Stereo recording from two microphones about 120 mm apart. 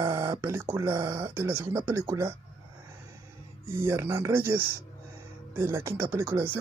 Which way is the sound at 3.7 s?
20° right (ahead or behind).